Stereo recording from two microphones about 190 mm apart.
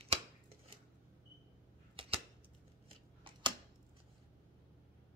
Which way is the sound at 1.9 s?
30° right (ahead or behind).